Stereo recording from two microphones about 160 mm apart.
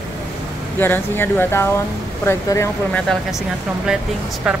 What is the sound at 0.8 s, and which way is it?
Speech, 15° left (ahead or behind).